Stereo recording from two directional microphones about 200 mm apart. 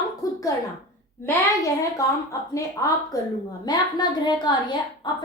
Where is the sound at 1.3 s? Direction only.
15° left (ahead or behind).